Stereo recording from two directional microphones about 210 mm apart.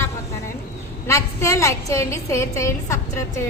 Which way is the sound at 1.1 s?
15° left (ahead or behind).